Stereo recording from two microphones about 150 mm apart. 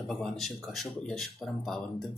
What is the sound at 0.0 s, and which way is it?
Speech, centre (ahead or behind).